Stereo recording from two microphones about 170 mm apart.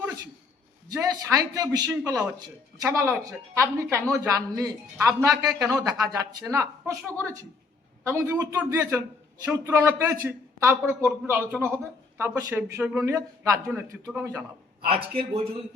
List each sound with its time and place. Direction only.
0.9 s a woman's voice: 20° right (ahead or behind)
14.8 s a man's voice: 35° right (ahead or behind)